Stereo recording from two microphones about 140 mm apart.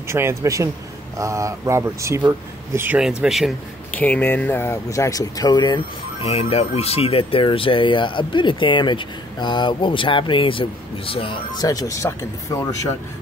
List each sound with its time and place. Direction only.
0.1 s speech: 20° right (ahead or behind)
3.0 s speech: 5° right (ahead or behind)
3.9 s speech: 10° left (ahead or behind); by 5.8 s 30° left (ahead or behind)
6.2 s speech: 45° left (ahead or behind); by 12.9 s 20° left (ahead or behind)